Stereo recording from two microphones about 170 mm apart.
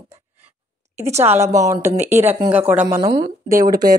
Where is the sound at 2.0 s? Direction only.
40° right (ahead or behind).